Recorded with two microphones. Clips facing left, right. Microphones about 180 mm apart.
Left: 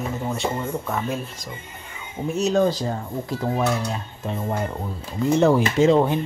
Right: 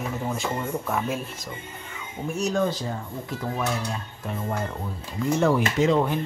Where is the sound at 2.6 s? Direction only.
40° left (ahead or behind).